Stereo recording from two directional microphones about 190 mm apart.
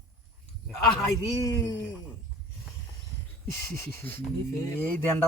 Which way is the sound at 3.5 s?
10° left (ahead or behind).